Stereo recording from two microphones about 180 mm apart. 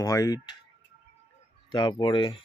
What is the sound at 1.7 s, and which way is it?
Speech, 25° left (ahead or behind).